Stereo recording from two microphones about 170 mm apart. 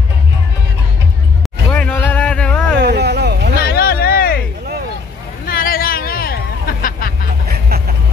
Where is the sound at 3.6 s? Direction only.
65° left (ahead or behind).